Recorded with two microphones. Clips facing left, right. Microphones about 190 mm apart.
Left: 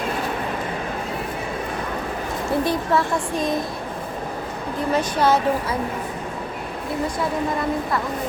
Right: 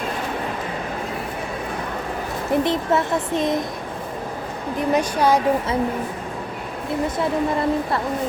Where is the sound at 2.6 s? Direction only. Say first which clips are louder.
Right 1 dB; 20° right (ahead or behind).